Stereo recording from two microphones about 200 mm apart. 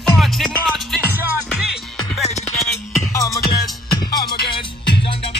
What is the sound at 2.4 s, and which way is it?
Music, 15° left (ahead or behind).